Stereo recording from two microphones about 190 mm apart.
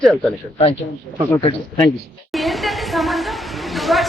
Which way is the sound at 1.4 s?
30° left (ahead or behind).